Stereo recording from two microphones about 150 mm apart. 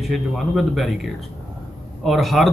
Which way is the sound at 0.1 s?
Centre (ahead or behind).